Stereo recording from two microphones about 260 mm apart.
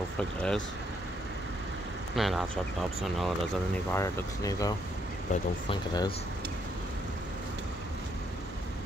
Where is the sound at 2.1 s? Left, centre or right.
Centre.